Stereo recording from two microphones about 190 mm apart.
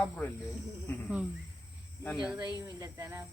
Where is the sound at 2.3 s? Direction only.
20° right (ahead or behind).